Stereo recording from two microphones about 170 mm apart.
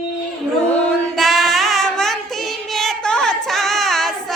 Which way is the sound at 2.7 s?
5° left (ahead or behind).